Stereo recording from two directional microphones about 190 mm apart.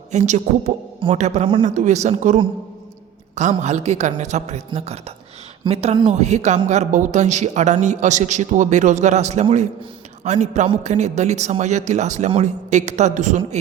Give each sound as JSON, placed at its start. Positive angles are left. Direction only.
{"t": 0.1, "sound": "a man's voice", "side_deg": -40}